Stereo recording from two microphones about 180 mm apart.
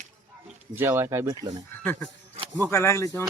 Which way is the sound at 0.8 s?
15° right (ahead or behind).